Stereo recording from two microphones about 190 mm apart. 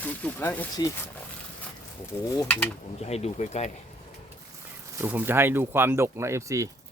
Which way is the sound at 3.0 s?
35° left (ahead or behind).